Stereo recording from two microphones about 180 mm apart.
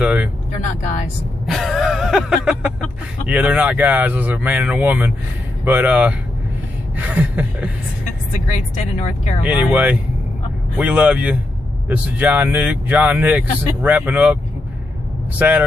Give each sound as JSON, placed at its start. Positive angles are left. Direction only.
{"t": 0.0, "sound": "speech", "side_deg": -5}
{"t": 0.5, "sound": "speech", "side_deg": 40}
{"t": 1.4, "sound": "music", "side_deg": 0}
{"t": 3.3, "sound": "speech", "side_deg": -5}
{"t": 8.0, "sound": "speech", "side_deg": 40}
{"t": 9.4, "sound": "speech", "side_deg": -5}